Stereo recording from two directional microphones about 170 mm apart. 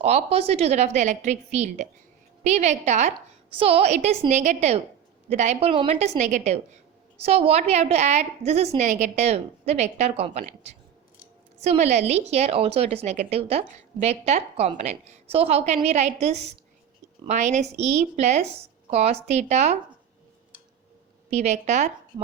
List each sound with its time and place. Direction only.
0.0 s a woman's voice: 35° right (ahead or behind)
21.2 s a woman's voice: 40° right (ahead or behind)